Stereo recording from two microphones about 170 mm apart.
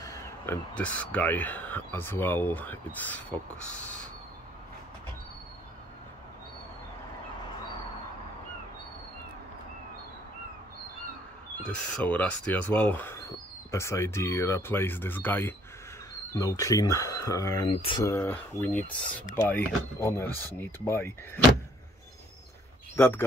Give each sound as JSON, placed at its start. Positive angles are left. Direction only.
{"t": 0.0, "sound": "a sound", "side_deg": 20}
{"t": 0.7, "sound": "speech", "side_deg": 10}
{"t": 11.6, "sound": "speech", "side_deg": 10}
{"t": 17.6, "sound": "speech", "side_deg": 30}
{"t": 18.0, "sound": "speech", "side_deg": 10}
{"t": 22.9, "sound": "speech", "side_deg": 15}